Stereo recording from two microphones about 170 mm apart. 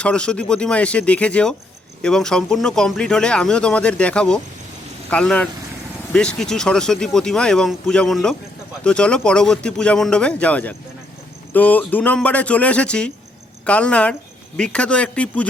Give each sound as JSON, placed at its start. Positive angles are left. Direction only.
{"t": 0.0, "sound": "speech", "side_deg": 5}